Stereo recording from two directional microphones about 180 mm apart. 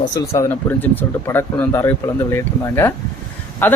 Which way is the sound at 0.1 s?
15° left (ahead or behind).